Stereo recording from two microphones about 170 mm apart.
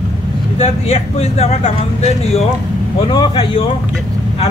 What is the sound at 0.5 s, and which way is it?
Speech, 35° left (ahead or behind).